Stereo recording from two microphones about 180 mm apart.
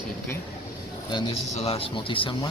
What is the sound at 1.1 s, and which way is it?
A man's voice, 30° left (ahead or behind).